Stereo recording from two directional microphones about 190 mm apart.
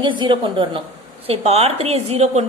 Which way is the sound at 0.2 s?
25° right (ahead or behind).